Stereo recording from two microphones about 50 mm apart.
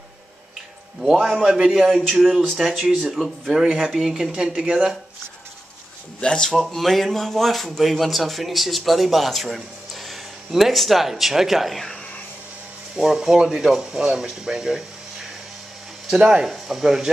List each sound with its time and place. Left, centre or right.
1.1 s speech: centre
3.4 s speech: centre
6.2 s speech: centre
6.5 s speech: centre
12.9 s speech: centre
16.1 s speech: centre